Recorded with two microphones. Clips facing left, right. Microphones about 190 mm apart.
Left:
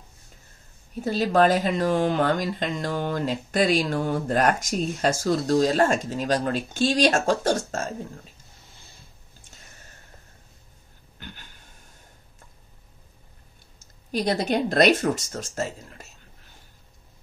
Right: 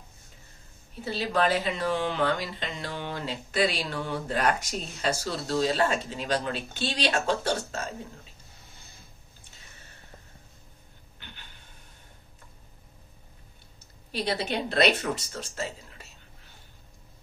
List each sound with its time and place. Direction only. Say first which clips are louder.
1.0 s speech: left 6 dB; 45° left (ahead or behind)
11.1 s a sound: left 7 dB; 45° left (ahead or behind)
14.1 s speech: left 6 dB; 45° left (ahead or behind)